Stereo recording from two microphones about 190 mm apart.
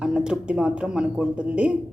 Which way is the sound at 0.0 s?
5° right (ahead or behind).